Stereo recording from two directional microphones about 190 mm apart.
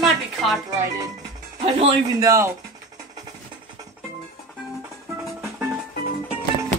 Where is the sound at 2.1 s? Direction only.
15° right (ahead or behind).